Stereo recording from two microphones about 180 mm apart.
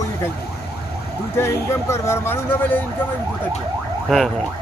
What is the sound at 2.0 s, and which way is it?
Speech, 15° left (ahead or behind).